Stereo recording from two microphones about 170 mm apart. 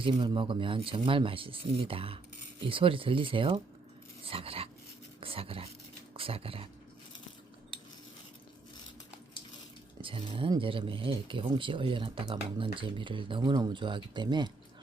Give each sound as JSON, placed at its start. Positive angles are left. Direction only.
{"t": 0.0, "sound": "speech", "side_deg": -30}
{"t": 10.0, "sound": "speech", "side_deg": -30}